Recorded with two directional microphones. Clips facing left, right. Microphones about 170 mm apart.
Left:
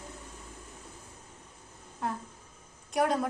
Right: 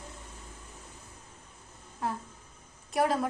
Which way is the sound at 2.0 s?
Centre (ahead or behind).